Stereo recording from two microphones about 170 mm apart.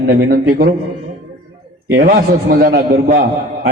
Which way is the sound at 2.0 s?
60° right (ahead or behind).